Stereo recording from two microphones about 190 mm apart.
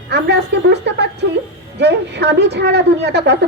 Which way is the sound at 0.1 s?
65° right (ahead or behind).